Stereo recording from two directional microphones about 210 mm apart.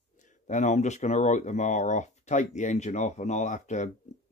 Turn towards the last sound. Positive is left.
turn(degrees=35)  # may be behind; listen again after turning